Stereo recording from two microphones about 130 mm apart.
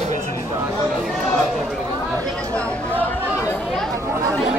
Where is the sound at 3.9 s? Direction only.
25° right (ahead or behind).